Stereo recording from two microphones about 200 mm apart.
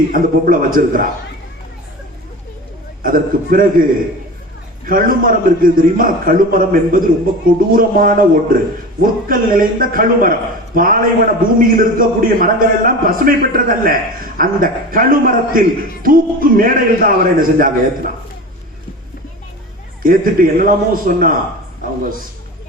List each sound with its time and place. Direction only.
0.1 s a man's voice: 45° right (ahead or behind)
3.0 s a man's voice: 45° right (ahead or behind)
4.9 s a man's voice: 45° right (ahead or behind)
20.0 s a man's voice: 45° right (ahead or behind)